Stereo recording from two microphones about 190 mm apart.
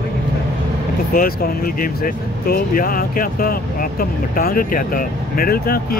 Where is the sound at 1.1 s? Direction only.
50° left (ahead or behind).